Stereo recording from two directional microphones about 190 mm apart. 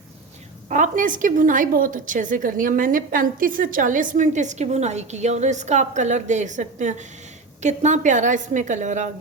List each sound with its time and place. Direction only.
0.7 s a woman's voice: 45° right (ahead or behind)